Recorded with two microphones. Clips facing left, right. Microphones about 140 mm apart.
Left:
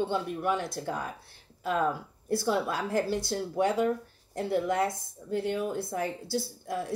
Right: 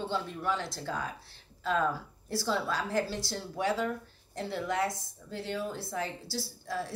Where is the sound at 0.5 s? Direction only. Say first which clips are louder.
Left 4 dB; 55° left (ahead or behind).